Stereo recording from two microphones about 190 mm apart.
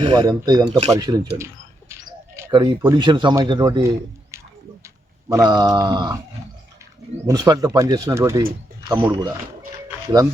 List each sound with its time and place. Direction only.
0.1 s speech: 20° right (ahead or behind)
7.3 s speech: 20° right (ahead or behind)